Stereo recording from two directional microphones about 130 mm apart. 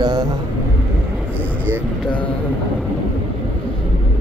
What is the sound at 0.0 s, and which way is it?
Speech, 30° right (ahead or behind).